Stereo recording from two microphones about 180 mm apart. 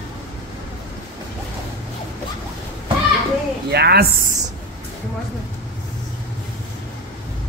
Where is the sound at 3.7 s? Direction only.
65° right (ahead or behind).